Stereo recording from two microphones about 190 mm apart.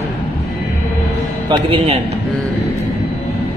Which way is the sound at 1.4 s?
25° right (ahead or behind).